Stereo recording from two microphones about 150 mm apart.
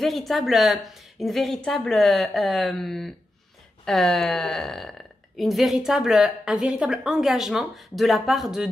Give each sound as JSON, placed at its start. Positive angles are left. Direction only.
{"t": 0.0, "sound": "speech", "side_deg": 0}